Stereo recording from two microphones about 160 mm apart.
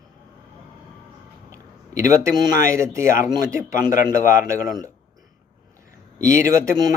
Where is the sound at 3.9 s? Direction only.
55° left (ahead or behind).